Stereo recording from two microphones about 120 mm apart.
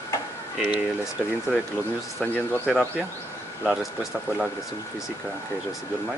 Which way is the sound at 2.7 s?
Centre (ahead or behind).